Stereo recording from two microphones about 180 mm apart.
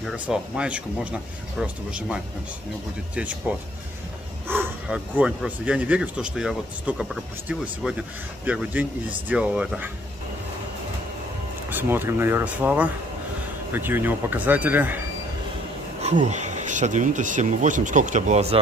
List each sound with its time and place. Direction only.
0.0 s speech: 5° right (ahead or behind)
3.2 s speech: 10° right (ahead or behind)
11.7 s speech: 10° right (ahead or behind)
16.0 s speech: 40° right (ahead or behind)